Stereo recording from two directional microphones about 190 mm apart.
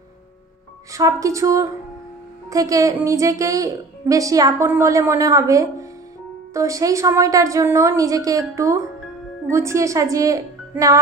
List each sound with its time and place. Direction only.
0.9 s a woman's voice: 15° right (ahead or behind)